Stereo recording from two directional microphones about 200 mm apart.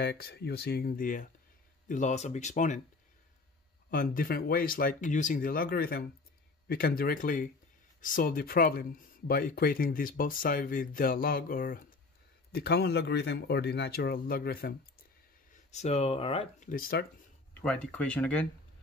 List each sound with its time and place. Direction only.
0.0 s speech: 55° left (ahead or behind)
3.9 s speech: 45° left (ahead or behind)
12.5 s speech: 55° left (ahead or behind)
15.5 s speech: 35° left (ahead or behind)
16.6 s speech: 45° left (ahead or behind)
17.6 s speech: 5° left (ahead or behind)